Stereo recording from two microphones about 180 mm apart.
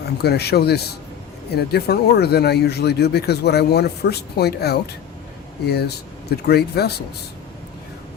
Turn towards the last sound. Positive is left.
turn(degrees=65)  # may be behind; listen again after turning